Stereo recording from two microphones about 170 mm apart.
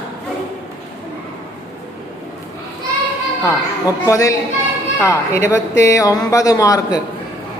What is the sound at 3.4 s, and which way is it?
Speech, 20° left (ahead or behind).